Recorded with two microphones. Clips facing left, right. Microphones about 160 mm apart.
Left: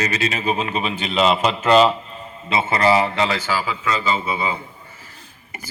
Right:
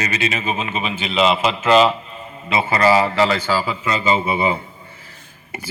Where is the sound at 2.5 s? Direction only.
25° left (ahead or behind).